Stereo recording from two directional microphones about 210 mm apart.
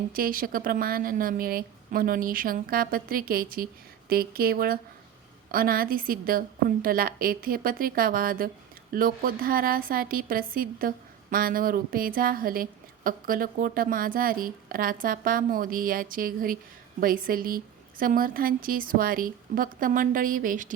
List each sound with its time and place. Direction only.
0.1 s a woman's voice: 45° right (ahead or behind)